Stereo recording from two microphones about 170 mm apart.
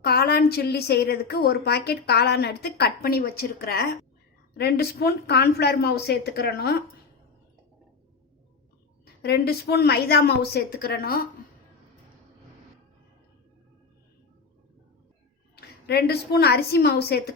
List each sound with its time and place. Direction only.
0.0 s a woman's voice: 70° left (ahead or behind)
9.2 s a woman's voice: 70° left (ahead or behind)
15.9 s a woman's voice: 70° left (ahead or behind)